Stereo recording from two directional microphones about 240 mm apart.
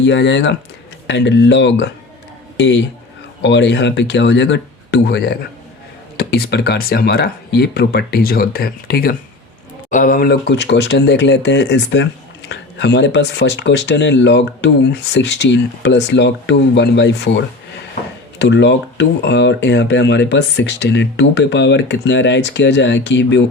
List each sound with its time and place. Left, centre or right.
0.0 s speech: left